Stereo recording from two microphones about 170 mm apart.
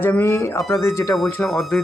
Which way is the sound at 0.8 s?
15° left (ahead or behind).